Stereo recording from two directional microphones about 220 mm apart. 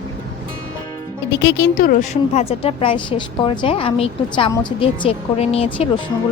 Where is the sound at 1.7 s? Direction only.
35° left (ahead or behind).